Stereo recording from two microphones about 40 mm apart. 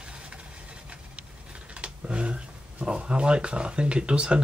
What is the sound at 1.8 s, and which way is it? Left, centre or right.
Speech, right.